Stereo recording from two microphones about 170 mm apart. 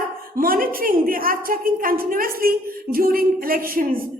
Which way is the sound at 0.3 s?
60° right (ahead or behind).